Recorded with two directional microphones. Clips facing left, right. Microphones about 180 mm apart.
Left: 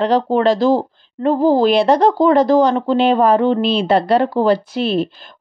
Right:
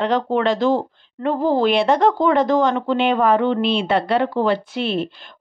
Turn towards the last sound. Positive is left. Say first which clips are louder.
# left 4 dB
turn(degrees=40)  # may be behind; listen again after turning